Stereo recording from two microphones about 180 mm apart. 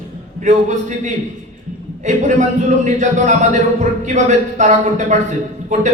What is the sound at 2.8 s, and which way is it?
Music, 40° right (ahead or behind).